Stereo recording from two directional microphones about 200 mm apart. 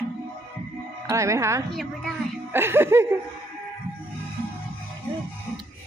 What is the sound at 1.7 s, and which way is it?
Speech, centre (ahead or behind).